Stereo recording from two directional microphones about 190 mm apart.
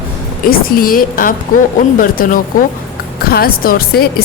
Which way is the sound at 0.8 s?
50° left (ahead or behind).